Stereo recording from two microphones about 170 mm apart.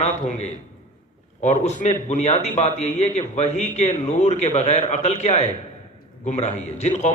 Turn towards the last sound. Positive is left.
turn(degrees=40)  # may be behind; listen again after turning